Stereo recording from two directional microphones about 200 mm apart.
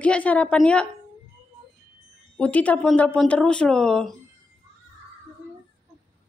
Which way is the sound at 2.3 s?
5° left (ahead or behind).